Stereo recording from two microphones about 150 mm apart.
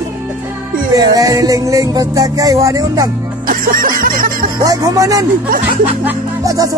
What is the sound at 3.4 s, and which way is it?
Music, 70° right (ahead or behind).